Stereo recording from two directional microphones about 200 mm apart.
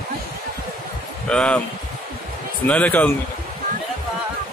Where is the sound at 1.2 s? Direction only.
5° left (ahead or behind).